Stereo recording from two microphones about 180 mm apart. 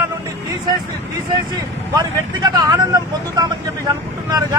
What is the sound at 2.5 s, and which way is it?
Speech, 20° right (ahead or behind).